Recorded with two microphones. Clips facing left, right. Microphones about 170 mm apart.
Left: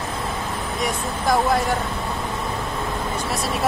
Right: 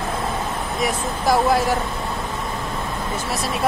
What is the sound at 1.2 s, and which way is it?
Speech, 5° right (ahead or behind).